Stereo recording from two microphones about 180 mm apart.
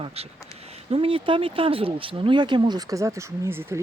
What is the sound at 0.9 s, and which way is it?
Speech, 30° right (ahead or behind).